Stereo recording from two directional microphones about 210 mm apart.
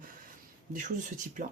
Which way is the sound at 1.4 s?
40° right (ahead or behind).